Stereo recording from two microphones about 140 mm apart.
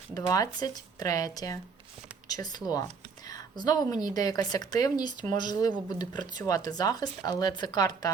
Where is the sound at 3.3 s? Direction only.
30° left (ahead or behind).